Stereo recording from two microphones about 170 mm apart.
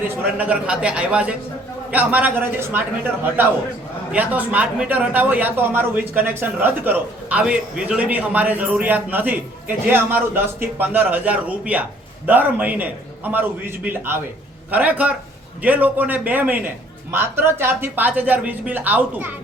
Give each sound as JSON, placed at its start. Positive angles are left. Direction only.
{"t": 0.1, "sound": "a man's voice", "side_deg": -10}